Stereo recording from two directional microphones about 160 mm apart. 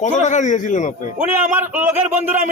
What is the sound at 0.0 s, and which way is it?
Speech, 50° left (ahead or behind).